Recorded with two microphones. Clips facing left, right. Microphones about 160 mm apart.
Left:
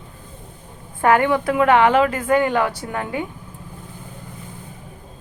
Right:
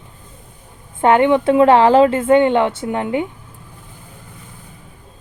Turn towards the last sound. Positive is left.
turn(degrees=-20)  # may be behind; listen again after turning